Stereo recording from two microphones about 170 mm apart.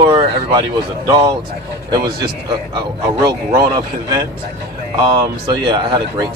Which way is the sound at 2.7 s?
25° right (ahead or behind).